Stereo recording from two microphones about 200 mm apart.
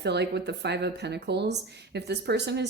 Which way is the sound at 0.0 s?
60° right (ahead or behind).